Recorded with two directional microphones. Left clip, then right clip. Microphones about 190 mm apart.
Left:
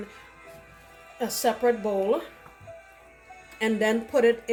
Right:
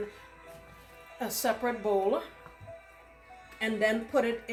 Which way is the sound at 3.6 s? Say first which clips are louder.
Left 4 dB; 50° left (ahead or behind).